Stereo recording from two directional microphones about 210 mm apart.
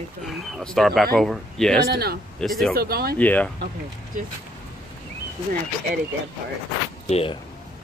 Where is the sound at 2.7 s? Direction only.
45° right (ahead or behind).